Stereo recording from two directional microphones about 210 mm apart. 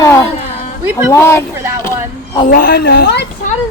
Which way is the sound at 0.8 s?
10° right (ahead or behind).